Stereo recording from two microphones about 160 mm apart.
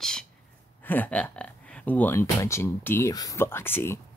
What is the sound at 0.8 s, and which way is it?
Speech, 10° left (ahead or behind).